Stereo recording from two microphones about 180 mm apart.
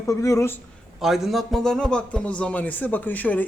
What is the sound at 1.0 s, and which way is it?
Speech, centre (ahead or behind).